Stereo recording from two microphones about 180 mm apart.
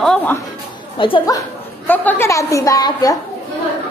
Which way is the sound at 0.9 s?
30° left (ahead or behind).